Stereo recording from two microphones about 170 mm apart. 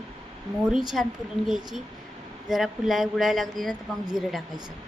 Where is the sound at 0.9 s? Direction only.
Centre (ahead or behind).